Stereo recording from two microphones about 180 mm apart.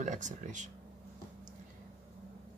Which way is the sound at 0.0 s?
45° right (ahead or behind).